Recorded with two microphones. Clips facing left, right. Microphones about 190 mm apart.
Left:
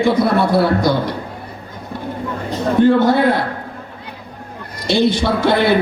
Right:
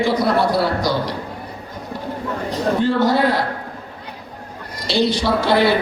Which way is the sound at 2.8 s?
55° left (ahead or behind).